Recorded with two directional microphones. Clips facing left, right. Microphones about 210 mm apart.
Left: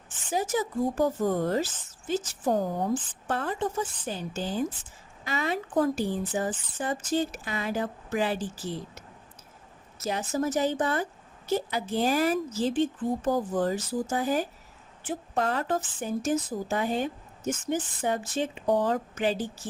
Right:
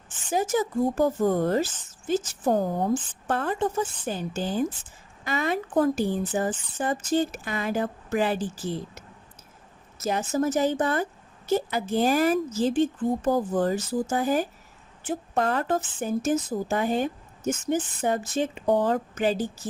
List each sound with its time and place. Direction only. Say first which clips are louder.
0.3 s a woman's voice: right 3 dB; 50° right (ahead or behind)
10.0 s a woman's voice: right 3 dB; 45° right (ahead or behind)